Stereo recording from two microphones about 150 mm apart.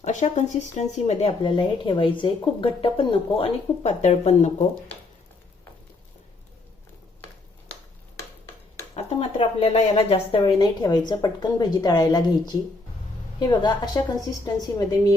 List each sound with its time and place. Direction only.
0.0 s speech: 50° left (ahead or behind)
1.5 s speech: 35° left (ahead or behind); by 4.5 s 50° left (ahead or behind)
9.0 s speech: 40° left (ahead or behind)
10.6 s speech: 25° left (ahead or behind)